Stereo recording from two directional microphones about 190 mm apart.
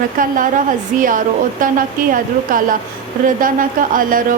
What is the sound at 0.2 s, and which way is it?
Speech, 45° right (ahead or behind).